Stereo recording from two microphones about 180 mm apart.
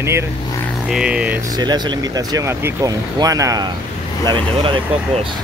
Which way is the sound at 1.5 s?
25° right (ahead or behind).